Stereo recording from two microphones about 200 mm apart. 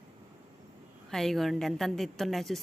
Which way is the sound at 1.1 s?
Centre (ahead or behind).